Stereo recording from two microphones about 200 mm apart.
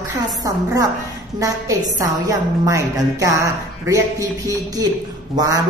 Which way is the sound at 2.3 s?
15° right (ahead or behind).